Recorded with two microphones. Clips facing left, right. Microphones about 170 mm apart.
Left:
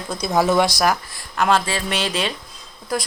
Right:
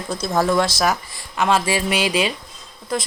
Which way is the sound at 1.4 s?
Centre (ahead or behind).